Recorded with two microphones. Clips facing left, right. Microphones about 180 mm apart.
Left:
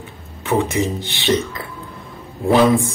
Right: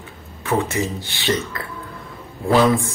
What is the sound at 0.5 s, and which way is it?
Speech, 20° left (ahead or behind).